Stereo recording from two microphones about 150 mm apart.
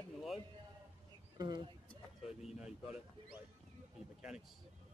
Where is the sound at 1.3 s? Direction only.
30° right (ahead or behind).